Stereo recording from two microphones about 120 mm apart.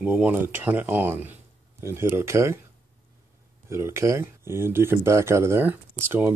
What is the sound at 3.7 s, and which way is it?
Speech, 25° right (ahead or behind).